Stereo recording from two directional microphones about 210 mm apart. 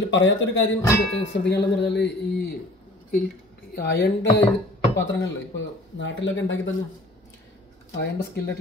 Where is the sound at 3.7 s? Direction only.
50° left (ahead or behind).